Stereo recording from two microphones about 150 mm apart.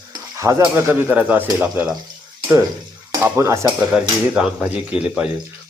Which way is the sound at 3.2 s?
15° right (ahead or behind).